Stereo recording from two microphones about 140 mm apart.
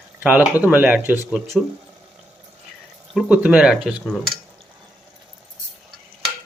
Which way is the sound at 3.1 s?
5° right (ahead or behind).